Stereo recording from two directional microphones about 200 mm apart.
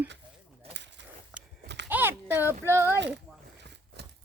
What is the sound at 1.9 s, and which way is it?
Speech, 10° right (ahead or behind).